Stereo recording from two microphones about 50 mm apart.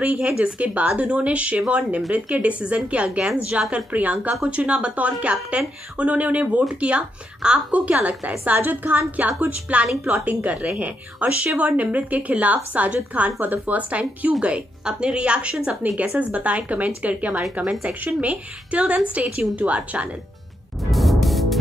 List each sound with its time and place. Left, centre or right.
0.0 s a woman's voice: right
4.5 s speech: right
8.5 s a woman's voice: right
20.9 s music: centre